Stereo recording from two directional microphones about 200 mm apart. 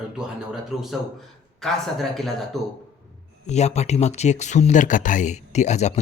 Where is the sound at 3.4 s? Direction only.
35° left (ahead or behind).